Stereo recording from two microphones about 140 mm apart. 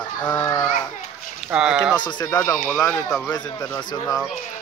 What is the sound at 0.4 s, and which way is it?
Children playing, 25° left (ahead or behind).